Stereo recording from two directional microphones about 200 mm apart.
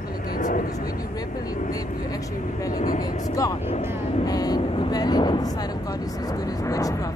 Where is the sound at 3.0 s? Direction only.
20° left (ahead or behind).